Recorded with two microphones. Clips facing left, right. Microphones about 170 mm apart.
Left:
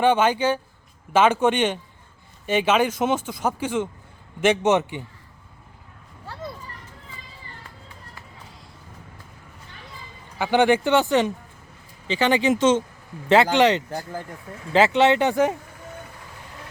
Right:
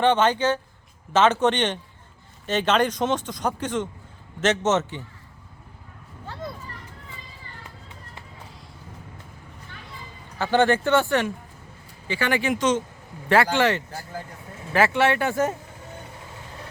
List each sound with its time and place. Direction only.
0.0 s speech: 10° left (ahead or behind)
10.3 s speech: 15° left (ahead or behind)